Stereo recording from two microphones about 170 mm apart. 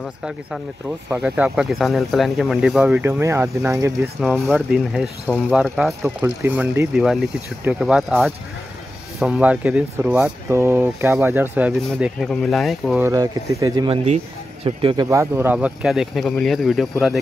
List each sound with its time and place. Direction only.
0.0 s speech: 5° right (ahead or behind)
4.5 s speech: centre (ahead or behind)
9.2 s speech: 5° right (ahead or behind)
13.0 s speech: 20° right (ahead or behind)
14.0 s speech: 40° right (ahead or behind)
15.0 s speech: 15° right (ahead or behind); by 17.2 s centre (ahead or behind)